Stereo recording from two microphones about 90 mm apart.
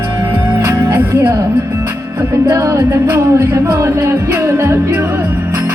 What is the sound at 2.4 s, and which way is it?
Music, 35° right (ahead or behind).